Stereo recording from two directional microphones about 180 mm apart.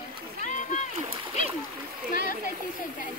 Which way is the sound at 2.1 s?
50° left (ahead or behind).